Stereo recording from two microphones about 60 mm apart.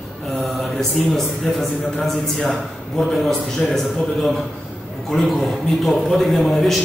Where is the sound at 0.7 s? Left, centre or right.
Centre.